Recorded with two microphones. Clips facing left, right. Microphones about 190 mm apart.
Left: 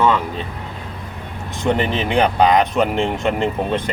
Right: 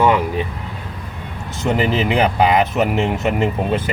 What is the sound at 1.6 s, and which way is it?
Speech, 5° right (ahead or behind).